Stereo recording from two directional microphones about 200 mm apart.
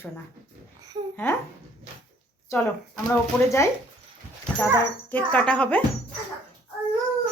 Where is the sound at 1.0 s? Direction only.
25° right (ahead or behind).